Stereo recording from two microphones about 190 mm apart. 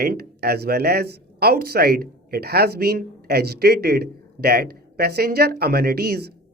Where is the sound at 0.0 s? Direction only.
55° right (ahead or behind).